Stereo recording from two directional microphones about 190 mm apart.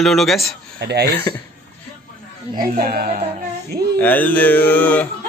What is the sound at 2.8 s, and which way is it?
Speech, 50° right (ahead or behind).